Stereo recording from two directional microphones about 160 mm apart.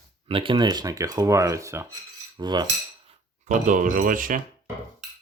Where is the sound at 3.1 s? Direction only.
50° right (ahead or behind).